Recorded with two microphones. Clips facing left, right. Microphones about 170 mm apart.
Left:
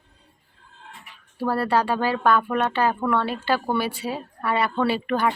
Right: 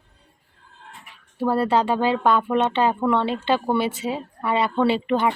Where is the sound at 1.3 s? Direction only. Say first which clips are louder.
Right 2 dB; 20° right (ahead or behind).